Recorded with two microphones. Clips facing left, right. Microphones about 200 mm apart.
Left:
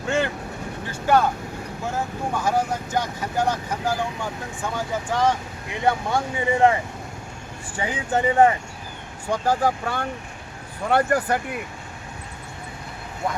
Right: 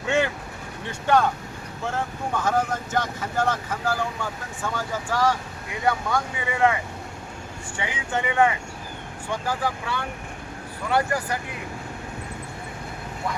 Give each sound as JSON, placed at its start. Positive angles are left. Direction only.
{"t": 0.9, "sound": "speech", "side_deg": 5}
{"t": 7.8, "sound": "speech", "side_deg": 35}